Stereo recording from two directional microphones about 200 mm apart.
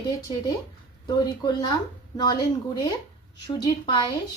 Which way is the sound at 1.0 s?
20° left (ahead or behind).